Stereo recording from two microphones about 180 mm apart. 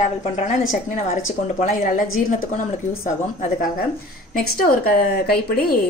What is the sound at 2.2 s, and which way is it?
A woman's voice, 45° left (ahead or behind).